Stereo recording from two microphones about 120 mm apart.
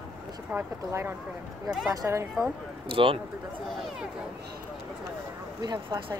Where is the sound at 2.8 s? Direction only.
45° right (ahead or behind).